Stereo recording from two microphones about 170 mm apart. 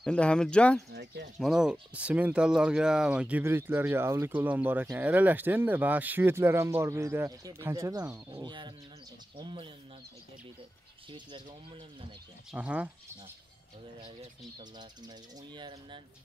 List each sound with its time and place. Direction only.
0.0 s speech: 5° left (ahead or behind)
0.9 s a sound: 80° right
1.4 s speech: 5° right (ahead or behind); by 9.7 s 30° right (ahead or behind)
11.1 s speech: 30° right (ahead or behind)
12.4 s speech: 5° right (ahead or behind)
14.6 s speech: 25° right (ahead or behind)